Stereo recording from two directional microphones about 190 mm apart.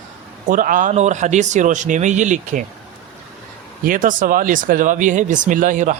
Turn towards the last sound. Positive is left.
turn(degrees=-40)  # may be behind; listen again after turning